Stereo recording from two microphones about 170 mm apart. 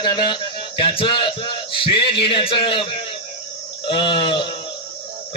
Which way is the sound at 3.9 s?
30° left (ahead or behind).